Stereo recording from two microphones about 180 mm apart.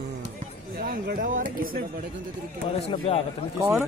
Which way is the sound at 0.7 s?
50° right (ahead or behind).